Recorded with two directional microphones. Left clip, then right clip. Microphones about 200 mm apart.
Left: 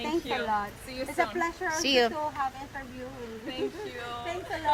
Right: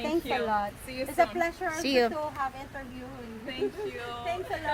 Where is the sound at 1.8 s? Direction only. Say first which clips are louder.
Left 1 dB; 5° right (ahead or behind).